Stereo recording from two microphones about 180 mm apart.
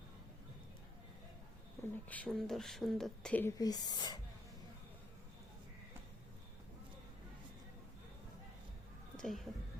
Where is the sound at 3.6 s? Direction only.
20° left (ahead or behind).